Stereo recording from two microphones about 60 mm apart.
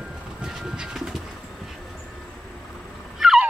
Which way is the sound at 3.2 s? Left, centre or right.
Centre.